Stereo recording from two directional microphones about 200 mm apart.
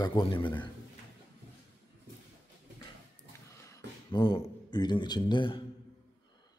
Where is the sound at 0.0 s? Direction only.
25° left (ahead or behind).